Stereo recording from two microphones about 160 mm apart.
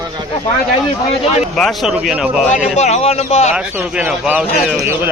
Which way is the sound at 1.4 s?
Centre (ahead or behind).